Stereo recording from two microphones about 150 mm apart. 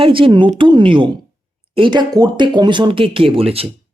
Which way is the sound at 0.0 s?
35° right (ahead or behind).